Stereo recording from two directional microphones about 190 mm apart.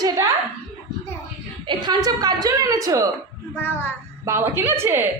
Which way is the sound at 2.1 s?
20° right (ahead or behind).